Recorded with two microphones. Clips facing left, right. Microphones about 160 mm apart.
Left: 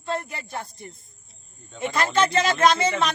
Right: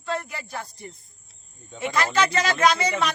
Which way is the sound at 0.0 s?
20° left (ahead or behind).